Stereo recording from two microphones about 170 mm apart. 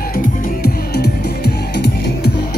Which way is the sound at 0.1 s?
55° left (ahead or behind).